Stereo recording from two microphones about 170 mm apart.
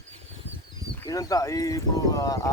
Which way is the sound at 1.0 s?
20° left (ahead or behind).